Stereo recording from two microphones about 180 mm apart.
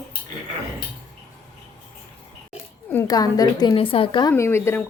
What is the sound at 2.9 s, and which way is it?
A woman's voice, 15° left (ahead or behind).